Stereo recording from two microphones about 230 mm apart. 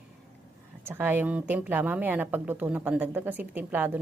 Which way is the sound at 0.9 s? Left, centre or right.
Centre.